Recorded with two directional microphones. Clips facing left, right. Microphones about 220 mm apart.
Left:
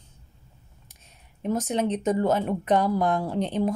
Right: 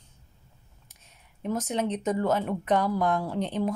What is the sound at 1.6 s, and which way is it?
Speech, 20° left (ahead or behind).